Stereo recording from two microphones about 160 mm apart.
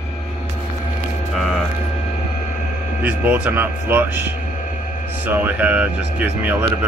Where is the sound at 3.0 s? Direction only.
10° right (ahead or behind).